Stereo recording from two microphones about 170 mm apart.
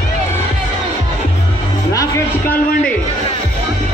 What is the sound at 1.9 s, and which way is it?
Music, 20° left (ahead or behind).